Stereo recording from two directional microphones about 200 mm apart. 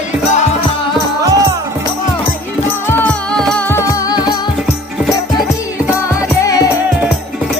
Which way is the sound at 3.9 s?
20° left (ahead or behind).